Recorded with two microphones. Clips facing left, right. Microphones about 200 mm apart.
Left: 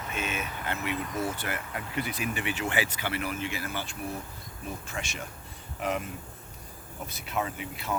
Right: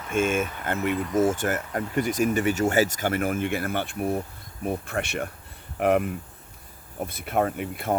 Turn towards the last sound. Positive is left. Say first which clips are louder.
# right 8 dB
turn(degrees=-55)  # may be behind; listen again after turning